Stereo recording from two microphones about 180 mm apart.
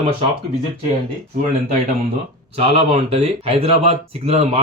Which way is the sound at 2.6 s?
30° right (ahead or behind).